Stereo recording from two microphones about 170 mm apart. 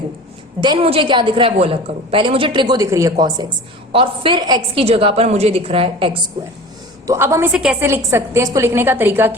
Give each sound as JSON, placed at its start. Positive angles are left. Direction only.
{"t": 0.6, "sound": "a woman's voice", "side_deg": -30}
{"t": 7.1, "sound": "a woman's voice", "side_deg": -15}
{"t": 7.9, "sound": "a woman's voice", "side_deg": -15}